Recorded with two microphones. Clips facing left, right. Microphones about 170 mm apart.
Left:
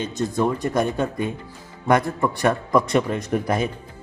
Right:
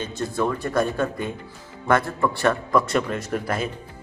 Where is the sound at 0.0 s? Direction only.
20° left (ahead or behind).